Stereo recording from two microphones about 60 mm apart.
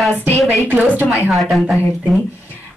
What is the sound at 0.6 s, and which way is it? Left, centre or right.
Speech, right.